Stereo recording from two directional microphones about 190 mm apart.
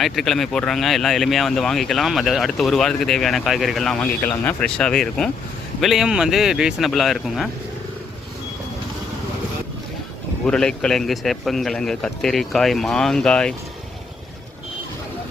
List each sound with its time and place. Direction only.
0.0 s speech: centre (ahead or behind)
10.4 s speech: 5° left (ahead or behind)